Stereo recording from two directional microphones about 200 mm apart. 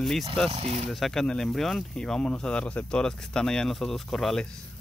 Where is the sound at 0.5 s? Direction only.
30° right (ahead or behind).